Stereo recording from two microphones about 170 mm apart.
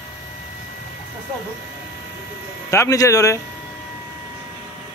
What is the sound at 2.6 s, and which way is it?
Speech, 20° left (ahead or behind).